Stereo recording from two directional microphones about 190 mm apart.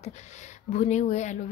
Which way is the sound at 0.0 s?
40° left (ahead or behind).